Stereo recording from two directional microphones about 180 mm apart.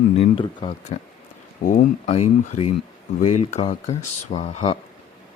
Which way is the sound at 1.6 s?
45° left (ahead or behind).